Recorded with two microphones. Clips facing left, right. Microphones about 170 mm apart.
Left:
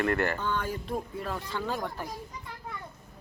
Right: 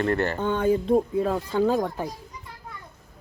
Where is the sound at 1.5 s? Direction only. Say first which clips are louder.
Right 12 dB; 40° right (ahead or behind).